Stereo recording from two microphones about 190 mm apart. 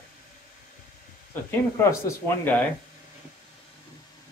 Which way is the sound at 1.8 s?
15° left (ahead or behind).